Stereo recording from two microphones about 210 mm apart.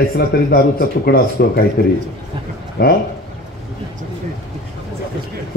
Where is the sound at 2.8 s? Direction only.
50° left (ahead or behind).